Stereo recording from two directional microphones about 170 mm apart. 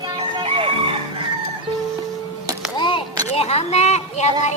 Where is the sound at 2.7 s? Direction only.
25° left (ahead or behind).